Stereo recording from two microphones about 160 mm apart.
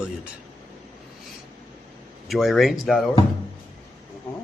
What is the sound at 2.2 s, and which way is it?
Speech, centre (ahead or behind).